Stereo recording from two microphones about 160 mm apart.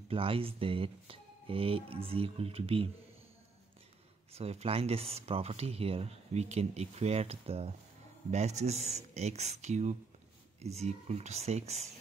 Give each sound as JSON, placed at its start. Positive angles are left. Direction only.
{"t": 0.1, "sound": "speech", "side_deg": -35}
{"t": 4.3, "sound": "speech", "side_deg": -40}